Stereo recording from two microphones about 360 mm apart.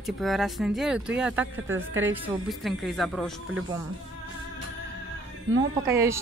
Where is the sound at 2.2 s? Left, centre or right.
Centre.